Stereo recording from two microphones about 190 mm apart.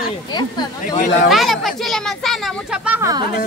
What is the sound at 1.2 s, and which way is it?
Speech, centre (ahead or behind).